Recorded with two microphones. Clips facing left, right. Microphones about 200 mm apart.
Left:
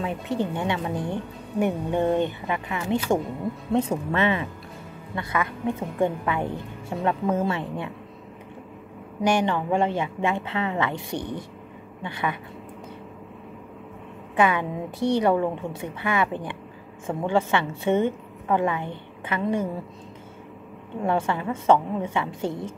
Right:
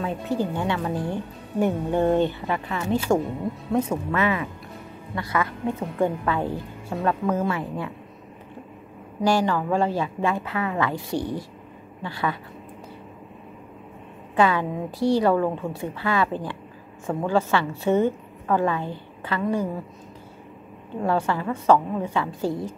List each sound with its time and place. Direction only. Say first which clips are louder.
0.0 s a woman's voice: right 1 dB; 25° left (ahead or behind)
9.2 s a woman's voice: right 1 dB; 20° left (ahead or behind)
14.3 s a woman's voice: right 1 dB; 20° left (ahead or behind)
21.0 s a woman's voice: right 1 dB; 20° left (ahead or behind)